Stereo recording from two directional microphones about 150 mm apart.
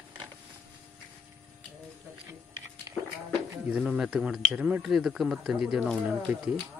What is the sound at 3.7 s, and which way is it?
Speech, 5° right (ahead or behind).